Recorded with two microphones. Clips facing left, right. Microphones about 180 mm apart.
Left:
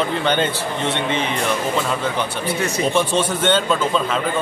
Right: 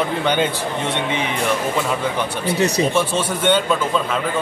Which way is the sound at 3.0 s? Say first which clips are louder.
Left 1 dB; 10° right (ahead or behind).